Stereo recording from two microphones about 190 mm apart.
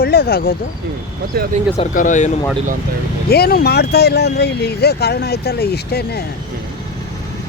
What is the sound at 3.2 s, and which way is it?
Speech, 55° left (ahead or behind).